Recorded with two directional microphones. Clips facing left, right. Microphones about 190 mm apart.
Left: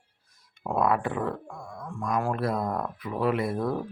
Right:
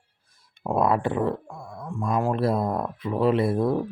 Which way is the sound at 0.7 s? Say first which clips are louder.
Right 3 dB; 25° right (ahead or behind).